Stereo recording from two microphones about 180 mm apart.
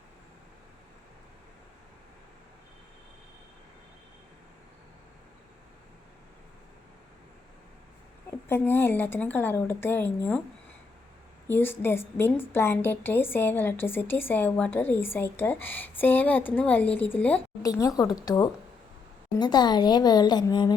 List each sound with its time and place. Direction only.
8.4 s a woman's voice: 10° left (ahead or behind)
11.4 s a woman's voice: 10° left (ahead or behind)